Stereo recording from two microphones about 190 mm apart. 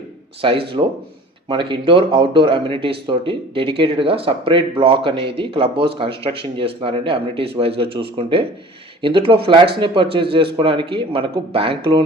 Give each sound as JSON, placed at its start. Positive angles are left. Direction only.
{"t": 0.4, "sound": "speech", "side_deg": -30}